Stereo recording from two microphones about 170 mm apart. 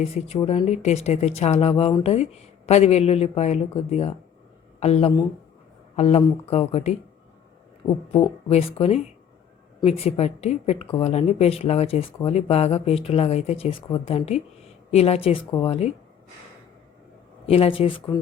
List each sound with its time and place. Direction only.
0.4 s speech: 40° left (ahead or behind)
2.6 s speech: 40° left (ahead or behind)
17.4 s speech: 35° left (ahead or behind)